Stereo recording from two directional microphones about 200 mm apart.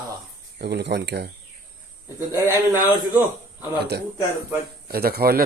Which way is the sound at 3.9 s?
55° right (ahead or behind).